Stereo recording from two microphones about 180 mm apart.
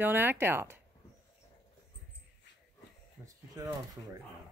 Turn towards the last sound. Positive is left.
turn(degrees=-20)  # may be behind; listen again after turning